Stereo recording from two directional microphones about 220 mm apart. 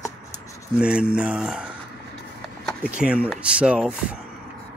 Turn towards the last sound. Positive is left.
turn(degrees=-5)  # may be behind; listen again after turning